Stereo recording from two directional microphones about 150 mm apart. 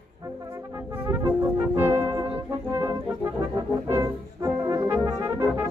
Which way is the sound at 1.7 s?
15° right (ahead or behind).